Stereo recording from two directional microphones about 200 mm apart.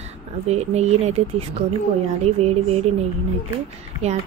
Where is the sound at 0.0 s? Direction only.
35° right (ahead or behind).